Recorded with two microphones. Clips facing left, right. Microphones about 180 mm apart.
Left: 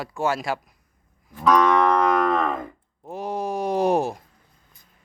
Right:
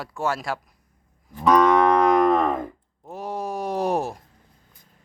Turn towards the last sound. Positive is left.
turn(degrees=0)  # may be behind; listen again after turning